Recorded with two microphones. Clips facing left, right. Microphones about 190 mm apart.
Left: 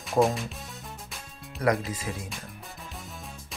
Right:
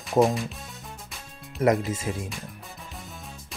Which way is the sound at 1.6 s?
25° right (ahead or behind).